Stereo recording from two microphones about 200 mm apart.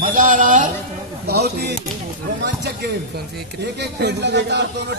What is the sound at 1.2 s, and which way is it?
Speech, 55° right (ahead or behind).